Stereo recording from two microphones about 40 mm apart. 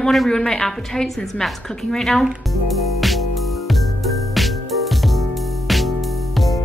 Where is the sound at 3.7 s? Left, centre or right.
Centre.